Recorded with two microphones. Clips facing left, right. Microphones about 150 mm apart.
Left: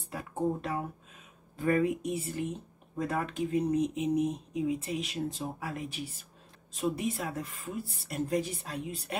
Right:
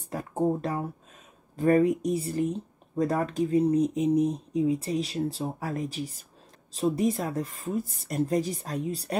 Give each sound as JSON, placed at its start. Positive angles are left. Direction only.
{"t": 0.1, "sound": "speech", "side_deg": -40}